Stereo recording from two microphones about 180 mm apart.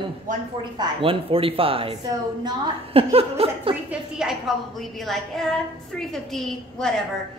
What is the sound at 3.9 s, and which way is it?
A woman's voice, 5° right (ahead or behind).